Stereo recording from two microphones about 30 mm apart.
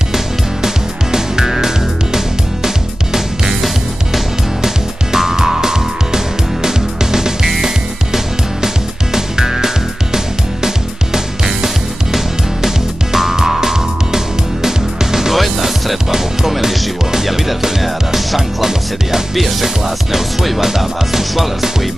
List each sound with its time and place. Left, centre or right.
0.1 s music: centre
11.1 s music: centre
15.3 s music: centre